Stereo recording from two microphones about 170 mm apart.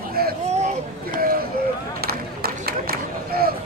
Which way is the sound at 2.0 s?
60° right (ahead or behind).